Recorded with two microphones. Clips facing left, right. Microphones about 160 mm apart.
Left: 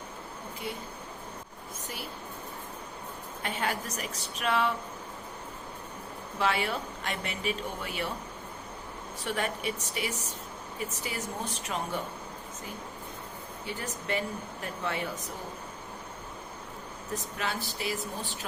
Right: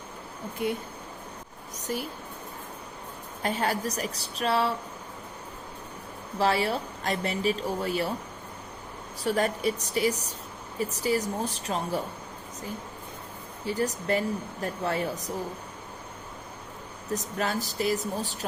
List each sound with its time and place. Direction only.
0.6 s speech: 55° right (ahead or behind)
1.7 s speech: 40° right (ahead or behind)
3.4 s a woman's voice: 35° right (ahead or behind)
6.4 s a woman's voice: 35° right (ahead or behind)
9.2 s a woman's voice: 40° right (ahead or behind)
13.7 s a woman's voice: 40° right (ahead or behind)
17.1 s a woman's voice: 40° right (ahead or behind)